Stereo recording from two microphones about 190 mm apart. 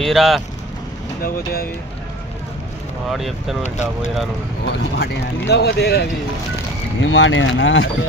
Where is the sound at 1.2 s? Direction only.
55° left (ahead or behind).